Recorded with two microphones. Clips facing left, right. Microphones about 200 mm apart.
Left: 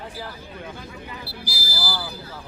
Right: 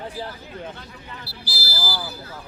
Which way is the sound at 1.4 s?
15° left (ahead or behind).